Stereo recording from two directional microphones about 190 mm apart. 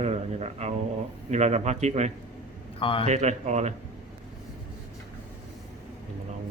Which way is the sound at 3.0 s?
35° right (ahead or behind).